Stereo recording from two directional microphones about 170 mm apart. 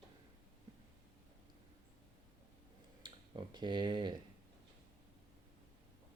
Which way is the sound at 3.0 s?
25° right (ahead or behind).